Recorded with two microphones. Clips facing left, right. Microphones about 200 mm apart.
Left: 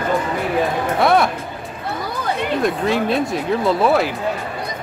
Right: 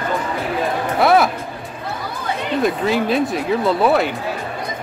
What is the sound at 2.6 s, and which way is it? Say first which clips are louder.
Speech: right 2 dB; centre (ahead or behind).